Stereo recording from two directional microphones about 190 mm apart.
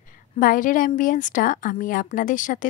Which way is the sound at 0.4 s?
45° left (ahead or behind).